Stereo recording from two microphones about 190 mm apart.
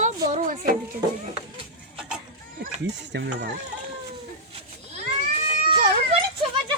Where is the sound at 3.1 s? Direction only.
65° right (ahead or behind).